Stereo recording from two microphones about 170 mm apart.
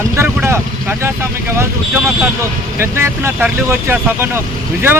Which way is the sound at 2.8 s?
15° right (ahead or behind).